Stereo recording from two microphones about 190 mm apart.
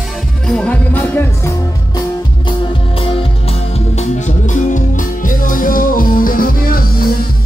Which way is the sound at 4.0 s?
40° left (ahead or behind).